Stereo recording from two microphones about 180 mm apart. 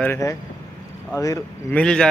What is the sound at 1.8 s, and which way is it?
Speech, 5° left (ahead or behind).